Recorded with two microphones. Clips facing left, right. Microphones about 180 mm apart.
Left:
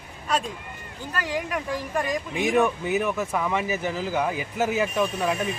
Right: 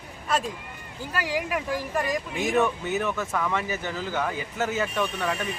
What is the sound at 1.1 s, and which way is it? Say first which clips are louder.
Speech: even; 10° right (ahead or behind).